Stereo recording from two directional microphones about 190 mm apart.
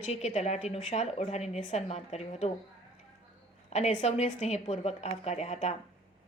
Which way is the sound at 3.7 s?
35° left (ahead or behind).